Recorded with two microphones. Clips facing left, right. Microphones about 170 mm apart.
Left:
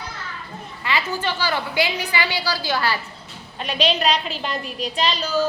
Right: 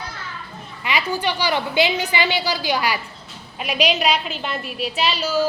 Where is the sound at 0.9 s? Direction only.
15° right (ahead or behind).